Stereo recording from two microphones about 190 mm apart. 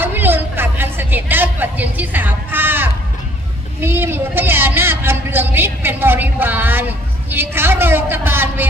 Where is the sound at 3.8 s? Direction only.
10° right (ahead or behind).